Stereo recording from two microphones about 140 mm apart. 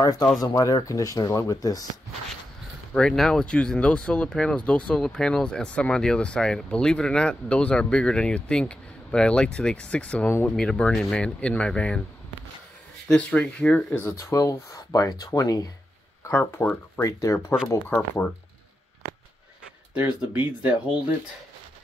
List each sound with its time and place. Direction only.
0.0 s speech: 25° left (ahead or behind)
2.9 s speech: 5° left (ahead or behind)
10.5 s speech: 5° left (ahead or behind)
13.1 s speech: 10° left (ahead or behind)
14.1 s speech: 25° left (ahead or behind)
16.3 s speech: 15° left (ahead or behind)
19.9 s speech: 10° right (ahead or behind)